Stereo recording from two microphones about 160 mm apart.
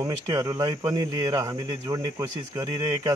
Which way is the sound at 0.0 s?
20° right (ahead or behind).